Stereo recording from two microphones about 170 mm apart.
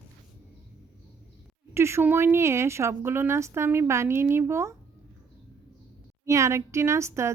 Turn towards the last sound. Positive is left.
turn(degrees=-15)  # may be behind; listen again after turning